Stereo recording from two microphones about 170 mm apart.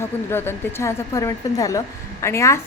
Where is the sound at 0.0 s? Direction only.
15° left (ahead or behind).